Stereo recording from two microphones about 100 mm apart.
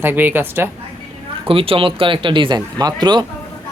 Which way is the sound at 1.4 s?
65° right (ahead or behind).